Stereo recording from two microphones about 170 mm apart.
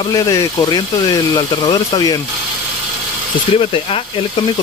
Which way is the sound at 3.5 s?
35° left (ahead or behind).